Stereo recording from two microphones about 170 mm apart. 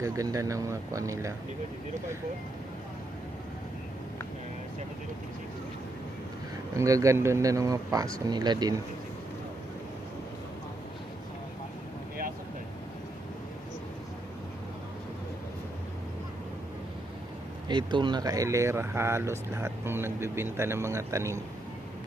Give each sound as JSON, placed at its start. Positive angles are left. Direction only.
{"t": 0.0, "sound": "speech", "side_deg": -20}
{"t": 6.7, "sound": "speech", "side_deg": -20}
{"t": 17.7, "sound": "speech", "side_deg": -25}